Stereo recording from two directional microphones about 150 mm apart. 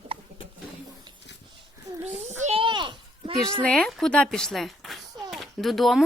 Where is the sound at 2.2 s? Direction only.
50° right (ahead or behind).